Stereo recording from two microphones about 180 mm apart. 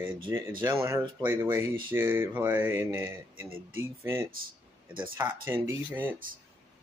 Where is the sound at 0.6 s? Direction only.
15° right (ahead or behind).